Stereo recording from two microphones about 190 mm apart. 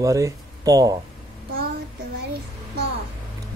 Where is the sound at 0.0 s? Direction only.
15° right (ahead or behind).